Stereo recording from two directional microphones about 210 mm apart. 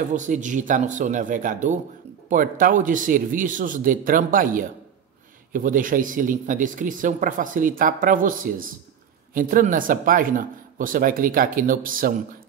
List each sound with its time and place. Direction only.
0.1 s speech: 35° right (ahead or behind)